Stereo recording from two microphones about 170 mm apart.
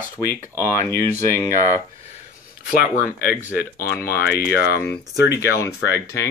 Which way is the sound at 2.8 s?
60° left (ahead or behind).